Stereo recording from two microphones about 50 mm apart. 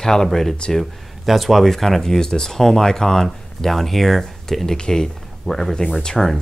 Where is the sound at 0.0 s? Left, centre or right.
Centre.